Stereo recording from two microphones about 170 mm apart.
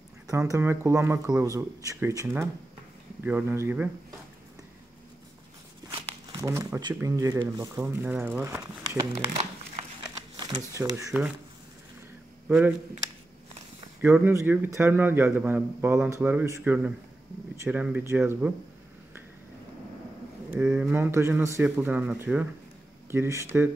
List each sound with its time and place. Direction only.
0.3 s a man's voice: 15° right (ahead or behind)
6.3 s a man's voice: 20° right (ahead or behind)
10.5 s speech: 20° right (ahead or behind)
12.4 s speech: 10° right (ahead or behind)
14.0 s a man's voice: 10° right (ahead or behind)
20.4 s a man's voice: 5° right (ahead or behind)